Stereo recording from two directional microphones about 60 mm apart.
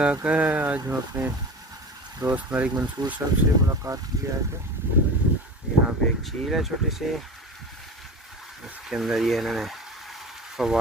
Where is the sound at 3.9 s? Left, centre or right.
Right.